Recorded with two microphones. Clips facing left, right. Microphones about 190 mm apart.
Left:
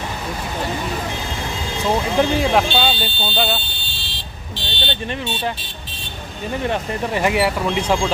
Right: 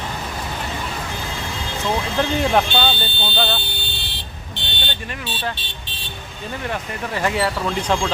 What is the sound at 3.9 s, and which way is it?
Vehicle, 60° right (ahead or behind).